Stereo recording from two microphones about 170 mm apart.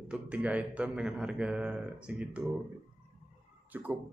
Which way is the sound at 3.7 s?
10° right (ahead or behind).